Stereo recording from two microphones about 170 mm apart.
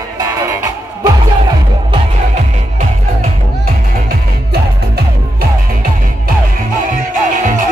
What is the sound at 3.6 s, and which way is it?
Music, 65° right (ahead or behind).